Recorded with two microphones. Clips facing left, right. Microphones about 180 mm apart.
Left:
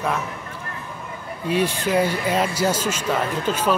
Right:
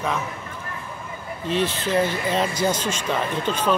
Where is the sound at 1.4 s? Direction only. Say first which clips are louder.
Left 2 dB; 10° left (ahead or behind).